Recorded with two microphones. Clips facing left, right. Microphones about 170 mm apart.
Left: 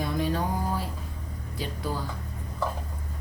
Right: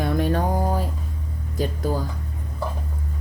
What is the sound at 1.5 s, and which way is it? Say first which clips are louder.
Speech: right 8 dB; 45° right (ahead or behind).